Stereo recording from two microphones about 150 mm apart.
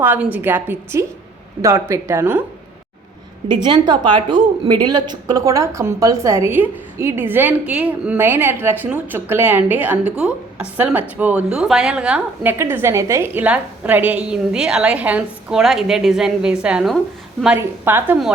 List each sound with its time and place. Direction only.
0.0 s a woman's voice: 10° right (ahead or behind)
3.7 s a woman's voice: 30° right (ahead or behind); by 17.0 s 5° right (ahead or behind)
17.6 s a woman's voice: 15° right (ahead or behind)